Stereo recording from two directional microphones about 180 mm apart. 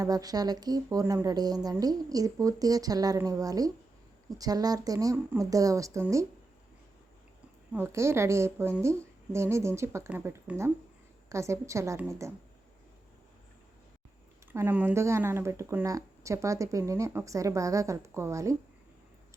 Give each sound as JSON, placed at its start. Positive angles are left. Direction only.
{"t": 0.0, "sound": "a woman's voice", "side_deg": -20}
{"t": 7.7, "sound": "speech", "side_deg": -15}
{"t": 14.5, "sound": "speech", "side_deg": -15}